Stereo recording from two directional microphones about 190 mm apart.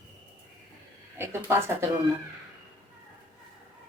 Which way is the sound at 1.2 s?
10° right (ahead or behind).